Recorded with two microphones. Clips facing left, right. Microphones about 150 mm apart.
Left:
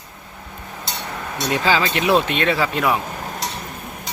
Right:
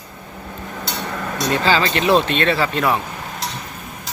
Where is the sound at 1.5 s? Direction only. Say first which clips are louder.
Right 1 dB; 10° left (ahead or behind).